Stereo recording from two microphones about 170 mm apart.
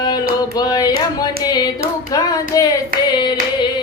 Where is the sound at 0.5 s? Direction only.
25° left (ahead or behind).